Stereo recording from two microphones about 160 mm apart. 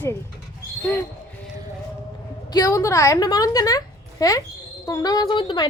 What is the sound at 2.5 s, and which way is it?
Speech, 20° left (ahead or behind).